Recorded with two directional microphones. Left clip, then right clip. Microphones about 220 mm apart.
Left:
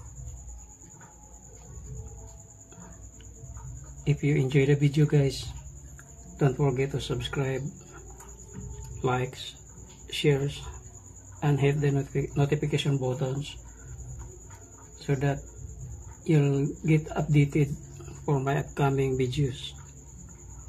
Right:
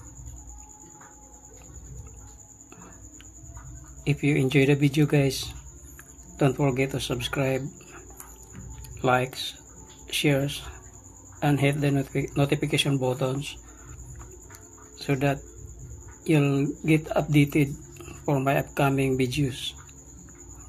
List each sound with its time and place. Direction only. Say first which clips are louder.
4.0 s speech: right 3 dB; 15° right (ahead or behind)
6.3 s speech: right 3 dB; 15° right (ahead or behind)
9.0 s speech: right 6 dB; 15° right (ahead or behind)
15.0 s speech: right 4 dB; 15° right (ahead or behind)